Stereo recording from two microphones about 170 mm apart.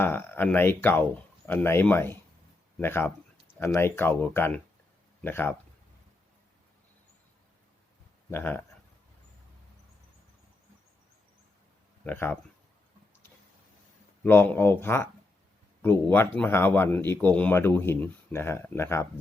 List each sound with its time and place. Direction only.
0.0 s speech: 10° left (ahead or behind)
8.3 s speech: 10° left (ahead or behind)
12.0 s speech: 10° left (ahead or behind)
14.3 s speech: 10° left (ahead or behind)